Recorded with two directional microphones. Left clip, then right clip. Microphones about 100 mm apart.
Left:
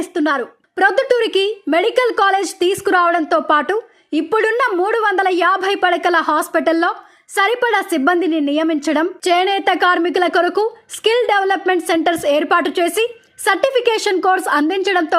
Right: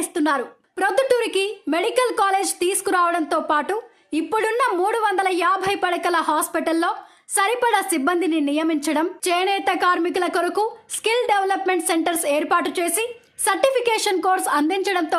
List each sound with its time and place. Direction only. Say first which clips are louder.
0.0 s a woman's voice: left 4 dB; 35° left (ahead or behind)
0.8 s a woman's voice: left 5 dB; 50° left (ahead or behind)